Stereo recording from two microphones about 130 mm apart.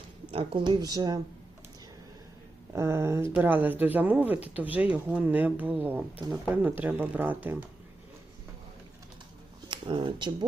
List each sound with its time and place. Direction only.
0.3 s speech: 40° right (ahead or behind)
2.7 s speech: 20° right (ahead or behind)
9.6 s speech: 35° right (ahead or behind)